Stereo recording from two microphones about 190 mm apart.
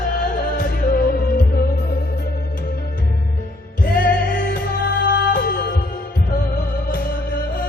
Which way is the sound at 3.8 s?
45° left (ahead or behind).